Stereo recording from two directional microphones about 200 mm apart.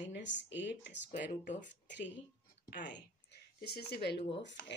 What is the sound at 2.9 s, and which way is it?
Speech, 55° left (ahead or behind).